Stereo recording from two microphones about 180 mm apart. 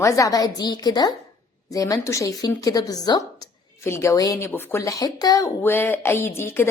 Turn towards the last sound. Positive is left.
turn(degrees=15)  # may be behind; listen again after turning